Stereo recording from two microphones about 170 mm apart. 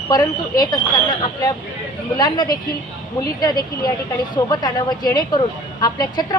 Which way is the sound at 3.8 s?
25° left (ahead or behind).